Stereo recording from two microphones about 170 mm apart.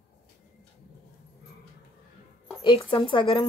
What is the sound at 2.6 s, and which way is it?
Speech, 30° left (ahead or behind).